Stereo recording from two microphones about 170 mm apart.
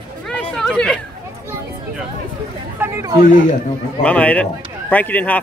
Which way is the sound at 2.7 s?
15° right (ahead or behind).